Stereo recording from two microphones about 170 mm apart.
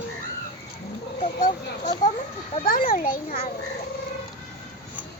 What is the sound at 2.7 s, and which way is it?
Speech, 55° left (ahead or behind).